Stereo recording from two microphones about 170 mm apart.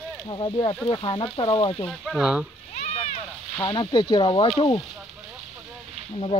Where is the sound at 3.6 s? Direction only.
30° left (ahead or behind).